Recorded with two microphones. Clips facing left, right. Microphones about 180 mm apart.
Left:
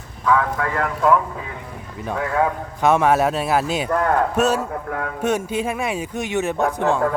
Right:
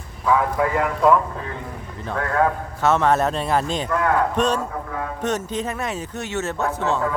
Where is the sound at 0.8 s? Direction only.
Centre (ahead or behind).